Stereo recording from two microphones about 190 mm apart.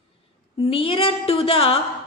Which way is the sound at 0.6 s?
30° left (ahead or behind).